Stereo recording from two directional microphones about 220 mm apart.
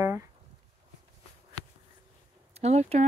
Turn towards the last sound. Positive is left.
turn(degrees=-30)  # may be behind; listen again after turning